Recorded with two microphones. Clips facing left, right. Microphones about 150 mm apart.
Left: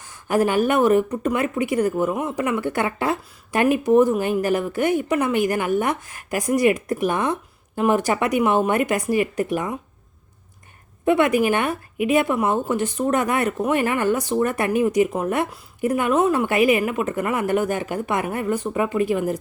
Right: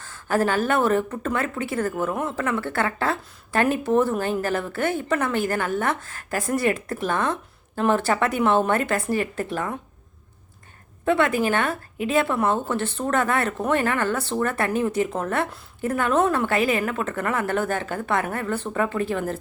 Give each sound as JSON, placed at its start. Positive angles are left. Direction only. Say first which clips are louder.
{"t": 0.0, "sound": "speech", "louder": "left 2 dB", "side_deg": 15}
{"t": 11.0, "sound": "speech", "louder": "left 3 dB", "side_deg": 20}